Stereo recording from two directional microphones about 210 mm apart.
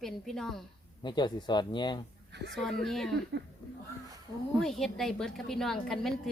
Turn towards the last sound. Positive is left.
turn(degrees=0)  # may be behind; listen again after turning